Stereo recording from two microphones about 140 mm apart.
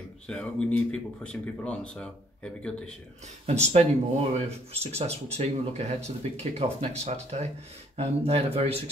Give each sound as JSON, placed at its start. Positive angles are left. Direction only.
{"t": 0.3, "sound": "speech", "side_deg": 10}
{"t": 3.4, "sound": "speech", "side_deg": -50}